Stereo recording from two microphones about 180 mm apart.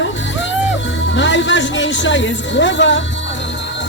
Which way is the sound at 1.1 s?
90° left.